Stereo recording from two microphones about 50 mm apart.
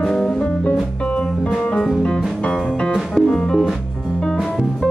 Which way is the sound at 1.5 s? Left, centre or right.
Centre.